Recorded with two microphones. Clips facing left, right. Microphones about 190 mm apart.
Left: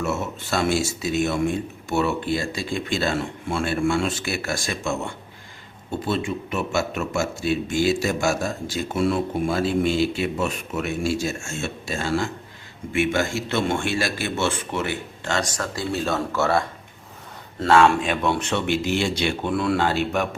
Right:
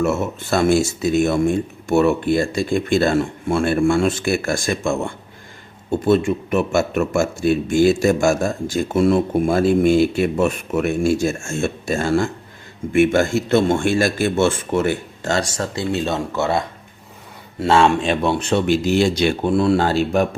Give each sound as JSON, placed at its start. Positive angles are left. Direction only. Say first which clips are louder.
{"t": 0.0, "sound": "speech", "louder": "right 6 dB", "side_deg": -50}
{"t": 15.5, "sound": "speech", "louder": "right 4 dB", "side_deg": -25}
{"t": 17.7, "sound": "speech", "louder": "right 2 dB", "side_deg": -25}